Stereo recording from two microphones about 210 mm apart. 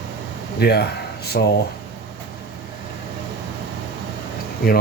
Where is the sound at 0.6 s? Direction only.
50° left (ahead or behind).